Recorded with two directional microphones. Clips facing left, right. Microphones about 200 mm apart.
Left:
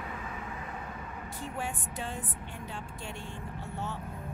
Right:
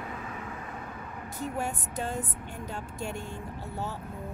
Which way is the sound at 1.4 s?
40° right (ahead or behind).